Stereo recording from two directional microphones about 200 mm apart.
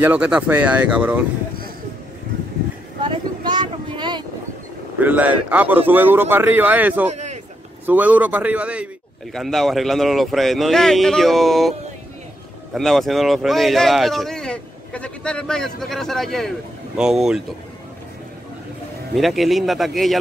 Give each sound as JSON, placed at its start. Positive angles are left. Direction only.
{"t": 0.0, "sound": "a man's voice", "side_deg": -5}
{"t": 3.0, "sound": "vehicle", "side_deg": -20}
{"t": 5.0, "sound": "a man's voice", "side_deg": -10}
{"t": 7.1, "sound": "a sound", "side_deg": -35}
{"t": 7.8, "sound": "a man's voice", "side_deg": -10}
{"t": 12.7, "sound": "speech", "side_deg": 0}
{"t": 19.1, "sound": "speech", "side_deg": 0}